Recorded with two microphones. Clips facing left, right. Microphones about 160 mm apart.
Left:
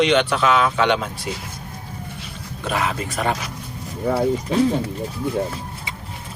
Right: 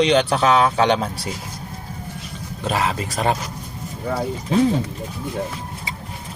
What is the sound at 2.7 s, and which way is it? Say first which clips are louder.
Speech: right 1 dB; 30° right (ahead or behind).